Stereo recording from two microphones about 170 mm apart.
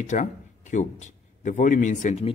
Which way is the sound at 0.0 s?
45° left (ahead or behind).